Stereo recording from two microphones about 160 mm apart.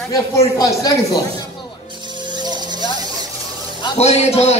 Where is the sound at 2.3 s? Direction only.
25° right (ahead or behind).